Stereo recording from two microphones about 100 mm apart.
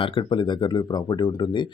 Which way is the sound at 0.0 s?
65° left (ahead or behind).